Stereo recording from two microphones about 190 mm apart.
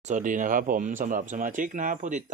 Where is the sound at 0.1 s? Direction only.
45° right (ahead or behind).